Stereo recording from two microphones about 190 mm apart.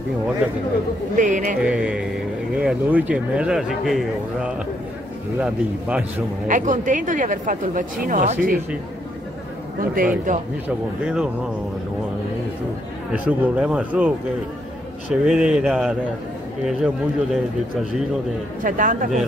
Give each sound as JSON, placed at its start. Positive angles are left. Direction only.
{"t": 1.1, "sound": "speech", "side_deg": -45}
{"t": 1.6, "sound": "speech", "side_deg": -5}
{"t": 5.4, "sound": "speech", "side_deg": -5}
{"t": 6.4, "sound": "speech", "side_deg": -40}
{"t": 9.8, "sound": "speech", "side_deg": -45}
{"t": 13.1, "sound": "speech", "side_deg": -10}
{"t": 15.2, "sound": "speech", "side_deg": -5}
{"t": 18.6, "sound": "speech", "side_deg": -45}